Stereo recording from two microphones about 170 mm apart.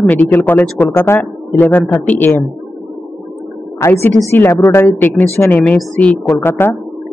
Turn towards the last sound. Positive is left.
turn(degrees=15)  # may be behind; listen again after turning